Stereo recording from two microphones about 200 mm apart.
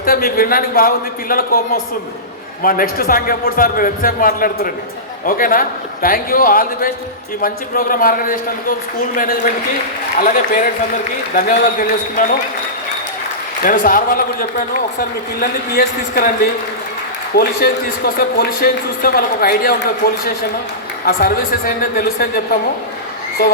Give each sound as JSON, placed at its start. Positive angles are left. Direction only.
{"t": 0.0, "sound": "a man's voice", "side_deg": 50}
{"t": 13.6, "sound": "a man's voice", "side_deg": 45}
{"t": 21.0, "sound": "a man's voice", "side_deg": 45}